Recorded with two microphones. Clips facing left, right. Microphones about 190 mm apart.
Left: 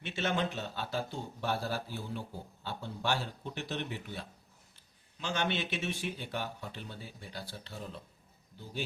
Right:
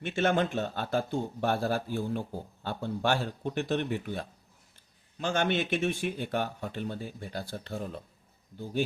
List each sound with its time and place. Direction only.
0.0 s speech: 50° right (ahead or behind)